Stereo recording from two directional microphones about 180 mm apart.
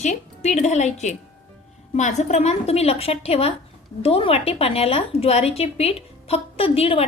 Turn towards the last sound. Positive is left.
turn(degrees=30)  # may be behind; listen again after turning